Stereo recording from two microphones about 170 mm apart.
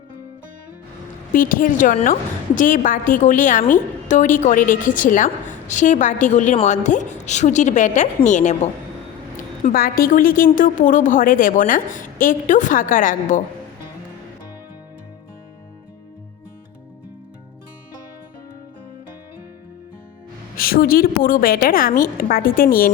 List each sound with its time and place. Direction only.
1.3 s a woman's voice: 55° left (ahead or behind)
9.6 s a woman's voice: 60° left (ahead or behind)
20.6 s a woman's voice: 60° left (ahead or behind)